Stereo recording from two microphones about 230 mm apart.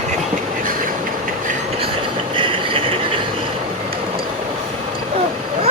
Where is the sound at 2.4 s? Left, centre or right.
Right.